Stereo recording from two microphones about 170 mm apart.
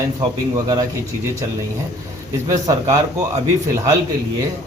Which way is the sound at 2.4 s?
20° right (ahead or behind).